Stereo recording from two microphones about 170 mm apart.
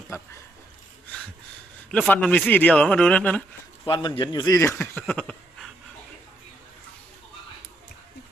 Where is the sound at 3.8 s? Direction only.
30° left (ahead or behind).